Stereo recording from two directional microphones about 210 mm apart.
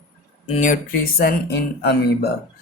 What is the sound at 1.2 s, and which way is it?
Speech, 50° left (ahead or behind).